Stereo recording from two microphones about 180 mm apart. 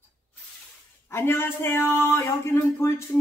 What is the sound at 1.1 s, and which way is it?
Speech, 15° left (ahead or behind).